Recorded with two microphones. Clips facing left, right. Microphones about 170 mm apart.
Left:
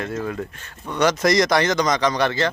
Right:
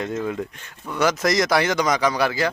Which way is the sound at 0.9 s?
5° right (ahead or behind).